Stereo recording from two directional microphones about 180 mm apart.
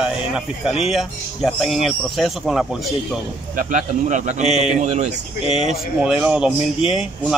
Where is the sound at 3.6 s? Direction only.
45° right (ahead or behind).